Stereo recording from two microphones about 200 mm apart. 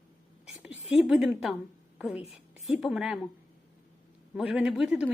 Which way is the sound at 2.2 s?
30° left (ahead or behind).